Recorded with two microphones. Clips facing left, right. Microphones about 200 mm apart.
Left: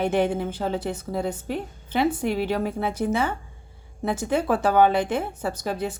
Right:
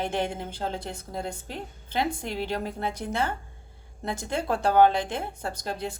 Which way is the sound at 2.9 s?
10° left (ahead or behind).